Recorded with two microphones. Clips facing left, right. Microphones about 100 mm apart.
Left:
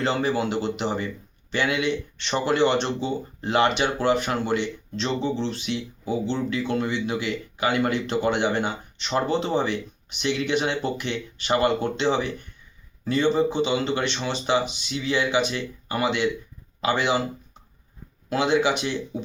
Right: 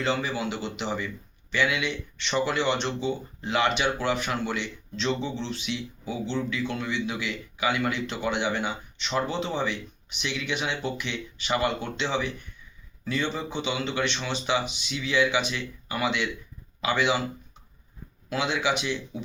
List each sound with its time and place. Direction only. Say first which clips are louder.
0.0 s speech: left 4 dB; 45° left (ahead or behind)
18.3 s speech: left 5 dB; 40° left (ahead or behind)